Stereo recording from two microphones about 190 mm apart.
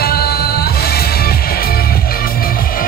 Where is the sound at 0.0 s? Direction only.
55° left (ahead or behind).